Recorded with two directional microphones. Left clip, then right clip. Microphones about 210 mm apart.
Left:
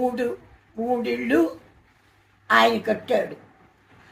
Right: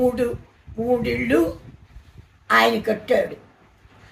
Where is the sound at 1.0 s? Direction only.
20° right (ahead or behind).